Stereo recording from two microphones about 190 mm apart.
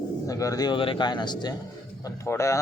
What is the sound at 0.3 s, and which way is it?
A man's voice, 15° left (ahead or behind).